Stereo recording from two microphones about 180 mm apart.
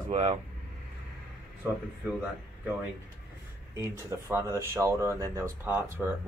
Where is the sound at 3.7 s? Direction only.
15° right (ahead or behind).